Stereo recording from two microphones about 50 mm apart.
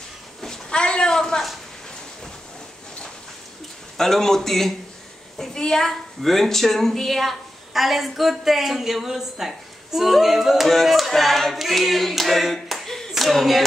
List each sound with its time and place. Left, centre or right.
0.4 s a sound: centre
4.0 s a woman's voice: centre
12.6 s clapping: centre
13.1 s speech: centre